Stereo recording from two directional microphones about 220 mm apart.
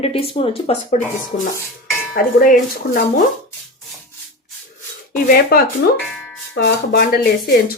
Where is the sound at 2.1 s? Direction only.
40° left (ahead or behind).